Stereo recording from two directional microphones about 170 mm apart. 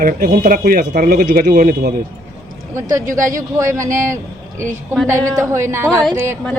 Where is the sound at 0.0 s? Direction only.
55° right (ahead or behind).